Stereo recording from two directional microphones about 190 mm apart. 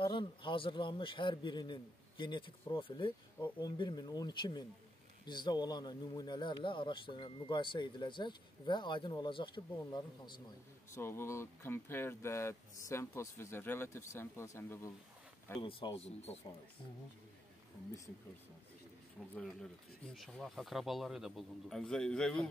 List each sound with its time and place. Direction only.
0.0 s a man's voice: 25° left (ahead or behind)
11.0 s speech: 10° left (ahead or behind)
15.6 s a man's voice: 25° left (ahead or behind)
19.3 s speech: 5° left (ahead or behind)